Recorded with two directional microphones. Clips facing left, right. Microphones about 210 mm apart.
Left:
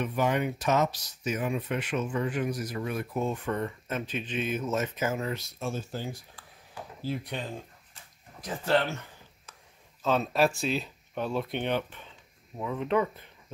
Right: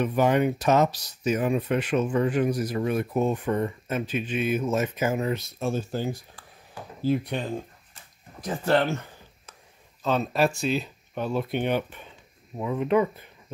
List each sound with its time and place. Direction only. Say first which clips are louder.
0.0 s speech: right 6 dB; 35° right (ahead or behind); by 5.5 s 20° right (ahead or behind)
5.6 s speech: right 7 dB; 35° right (ahead or behind); by 7.3 s 50° right (ahead or behind)
10.0 s speech: right 2 dB; centre (ahead or behind)